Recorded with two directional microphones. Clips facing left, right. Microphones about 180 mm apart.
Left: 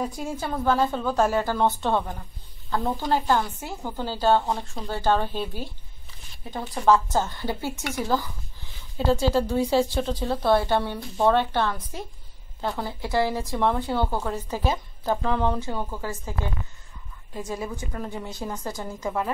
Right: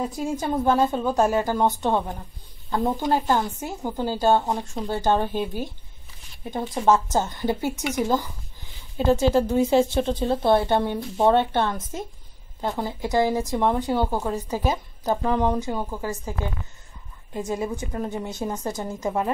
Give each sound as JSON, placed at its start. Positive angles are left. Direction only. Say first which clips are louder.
{"t": 0.4, "sound": "a woman's voice", "louder": "right 2 dB", "side_deg": -20}